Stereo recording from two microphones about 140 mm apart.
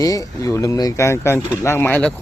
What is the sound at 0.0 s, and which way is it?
Speech, 25° left (ahead or behind).